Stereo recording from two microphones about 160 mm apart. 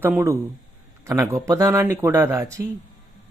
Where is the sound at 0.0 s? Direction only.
15° right (ahead or behind).